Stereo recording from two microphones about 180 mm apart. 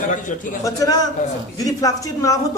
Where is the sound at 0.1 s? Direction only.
45° left (ahead or behind).